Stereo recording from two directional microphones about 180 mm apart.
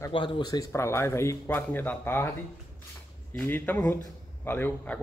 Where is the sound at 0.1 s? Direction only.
30° left (ahead or behind); by 2.3 s 10° left (ahead or behind).